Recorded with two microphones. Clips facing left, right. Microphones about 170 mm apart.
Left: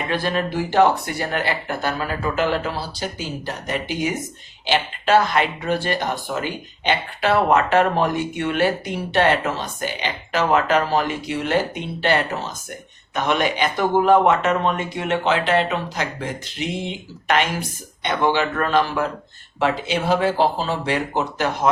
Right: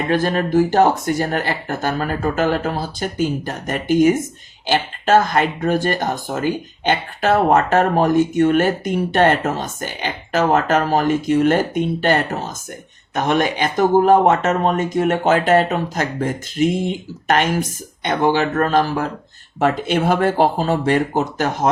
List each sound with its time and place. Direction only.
0.1 s speech: 45° right (ahead or behind)